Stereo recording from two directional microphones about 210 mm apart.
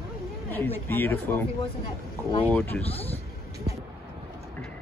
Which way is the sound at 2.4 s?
5° left (ahead or behind).